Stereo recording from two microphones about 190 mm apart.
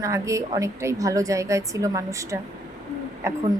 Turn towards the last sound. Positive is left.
turn(degrees=-15)  # may be behind; listen again after turning